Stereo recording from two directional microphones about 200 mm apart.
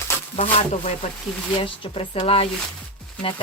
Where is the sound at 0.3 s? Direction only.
35° left (ahead or behind).